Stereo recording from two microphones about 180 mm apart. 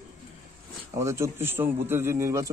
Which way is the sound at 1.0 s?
15° right (ahead or behind).